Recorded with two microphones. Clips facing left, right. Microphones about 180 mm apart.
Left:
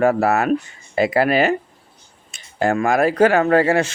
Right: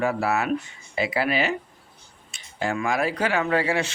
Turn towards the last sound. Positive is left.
turn(degrees=45)  # may be behind; listen again after turning